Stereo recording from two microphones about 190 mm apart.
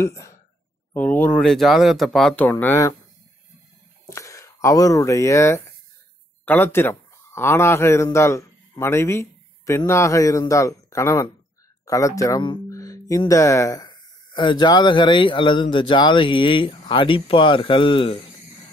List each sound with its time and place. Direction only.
0.0 s speech: 15° left (ahead or behind)
4.1 s a man's voice: 15° left (ahead or behind)